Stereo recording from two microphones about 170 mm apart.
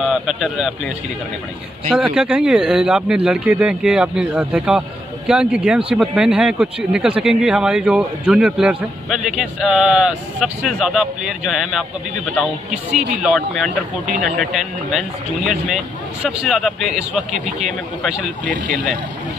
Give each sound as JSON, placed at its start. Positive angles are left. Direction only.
{"t": 0.0, "sound": "a man's voice", "side_deg": 0}
{"t": 1.9, "sound": "speech", "side_deg": 0}
{"t": 12.9, "sound": "speech", "side_deg": -45}
{"t": 13.2, "sound": "speech", "side_deg": 0}